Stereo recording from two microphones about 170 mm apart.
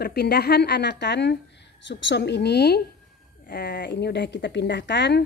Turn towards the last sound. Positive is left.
turn(degrees=90)